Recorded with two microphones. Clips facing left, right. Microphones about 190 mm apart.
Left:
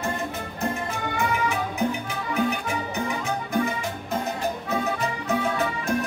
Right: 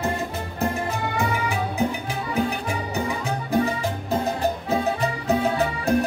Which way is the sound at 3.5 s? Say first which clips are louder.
Right 4 dB; 35° right (ahead or behind).